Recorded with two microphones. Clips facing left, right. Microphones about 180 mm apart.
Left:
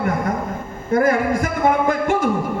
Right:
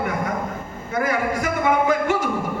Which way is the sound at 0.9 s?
50° left (ahead or behind).